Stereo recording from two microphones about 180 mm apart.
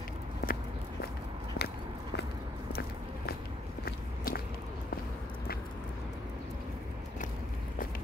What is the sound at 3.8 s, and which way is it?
Walk, 55° left (ahead or behind).